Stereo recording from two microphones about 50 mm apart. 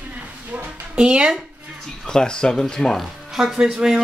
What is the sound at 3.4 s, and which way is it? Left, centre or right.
Speech, centre.